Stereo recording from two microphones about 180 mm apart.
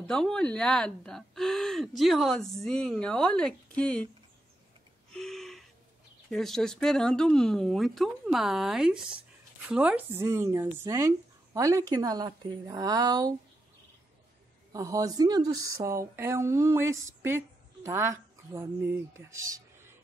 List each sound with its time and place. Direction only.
0.0 s speech: 5° left (ahead or behind)
5.1 s a sound: centre (ahead or behind)
6.3 s speech: centre (ahead or behind); by 13.3 s 20° right (ahead or behind)
14.7 s speech: 20° right (ahead or behind)